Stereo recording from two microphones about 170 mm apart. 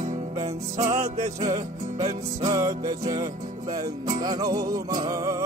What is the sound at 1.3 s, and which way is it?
Music, 20° right (ahead or behind).